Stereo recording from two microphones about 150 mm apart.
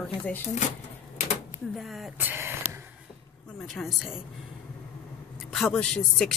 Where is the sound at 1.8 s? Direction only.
Centre (ahead or behind).